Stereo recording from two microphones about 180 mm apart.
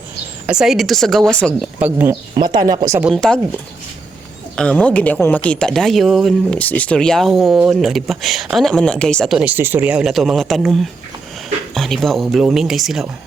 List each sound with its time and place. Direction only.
0.4 s speech: 5° right (ahead or behind)
1.8 s speech: 10° right (ahead or behind)
2.3 s speech: 25° right (ahead or behind)
3.0 s speech: centre (ahead or behind)
4.5 s speech: 5° left (ahead or behind)